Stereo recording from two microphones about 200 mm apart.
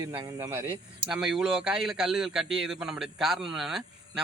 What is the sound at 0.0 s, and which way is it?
Speech, 15° right (ahead or behind).